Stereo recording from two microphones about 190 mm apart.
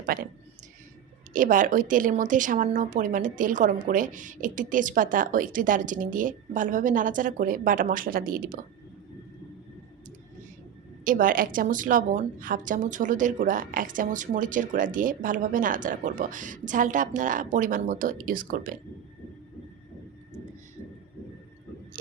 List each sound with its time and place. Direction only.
0.0 s speech: 50° right (ahead or behind)
1.3 s a woman's voice: 45° right (ahead or behind)
11.0 s a woman's voice: 45° right (ahead or behind)